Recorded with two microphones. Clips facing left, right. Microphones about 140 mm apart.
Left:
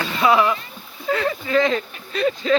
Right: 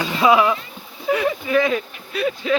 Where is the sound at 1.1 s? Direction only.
15° right (ahead or behind).